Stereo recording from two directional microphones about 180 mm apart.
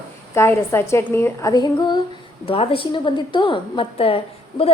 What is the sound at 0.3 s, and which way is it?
A woman's voice, 15° left (ahead or behind).